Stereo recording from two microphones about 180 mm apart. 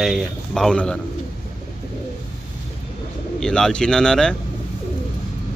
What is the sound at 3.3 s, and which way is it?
Speech, 5° left (ahead or behind).